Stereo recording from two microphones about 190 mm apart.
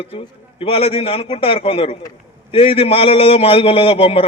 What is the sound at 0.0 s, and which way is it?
A man's voice, 30° left (ahead or behind).